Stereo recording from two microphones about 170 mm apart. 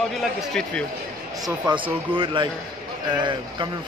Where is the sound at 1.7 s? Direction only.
25° right (ahead or behind).